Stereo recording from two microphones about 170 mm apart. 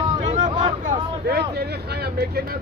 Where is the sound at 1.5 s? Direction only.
70° right (ahead or behind).